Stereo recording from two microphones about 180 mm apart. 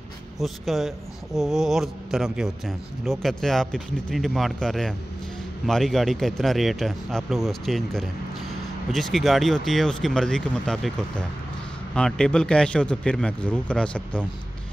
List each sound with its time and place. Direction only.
0.4 s a man's voice: centre (ahead or behind)
11.9 s a man's voice: 5° left (ahead or behind)